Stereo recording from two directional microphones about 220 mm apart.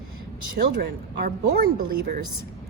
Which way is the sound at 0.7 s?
45° right (ahead or behind).